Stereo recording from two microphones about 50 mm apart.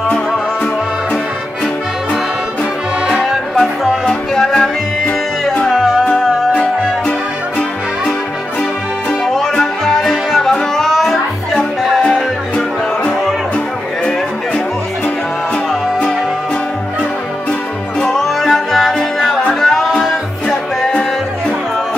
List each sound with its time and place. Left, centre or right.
3.1 s music: centre
4.0 s music: centre
5.7 s music: centre
6.0 s music: left
9.4 s music: centre
12.1 s music: left
18.1 s music: centre